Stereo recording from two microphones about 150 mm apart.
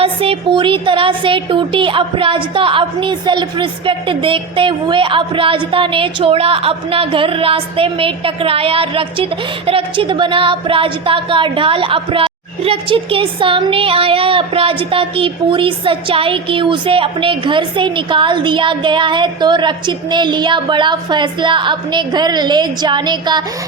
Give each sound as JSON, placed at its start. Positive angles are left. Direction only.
{"t": 0.0, "sound": "music", "side_deg": -35}